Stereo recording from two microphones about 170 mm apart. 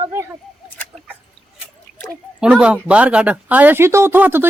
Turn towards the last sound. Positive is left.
turn(degrees=-10)  # may be behind; listen again after turning